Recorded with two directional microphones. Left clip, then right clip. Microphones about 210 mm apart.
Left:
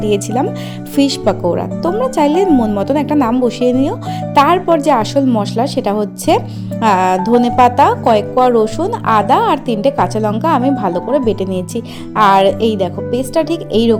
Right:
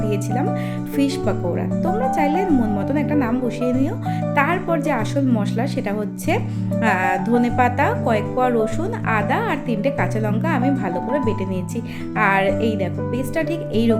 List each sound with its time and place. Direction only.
0.0 s a woman's voice: 30° left (ahead or behind)